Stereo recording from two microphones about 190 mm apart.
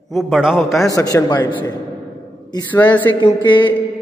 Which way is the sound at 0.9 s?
15° left (ahead or behind).